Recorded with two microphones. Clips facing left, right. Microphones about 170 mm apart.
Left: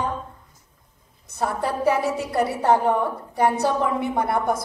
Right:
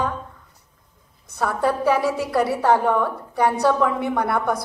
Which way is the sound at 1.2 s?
60° right (ahead or behind).